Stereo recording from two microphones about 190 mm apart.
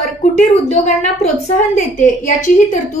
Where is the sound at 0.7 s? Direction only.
35° left (ahead or behind).